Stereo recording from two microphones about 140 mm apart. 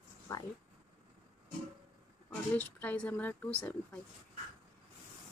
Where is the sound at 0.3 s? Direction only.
25° left (ahead or behind).